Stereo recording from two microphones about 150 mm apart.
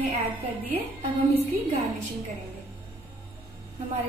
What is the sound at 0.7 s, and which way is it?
Speech, 45° right (ahead or behind).